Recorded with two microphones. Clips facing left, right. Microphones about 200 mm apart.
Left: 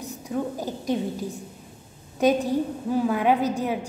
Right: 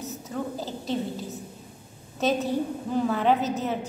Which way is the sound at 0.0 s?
15° left (ahead or behind).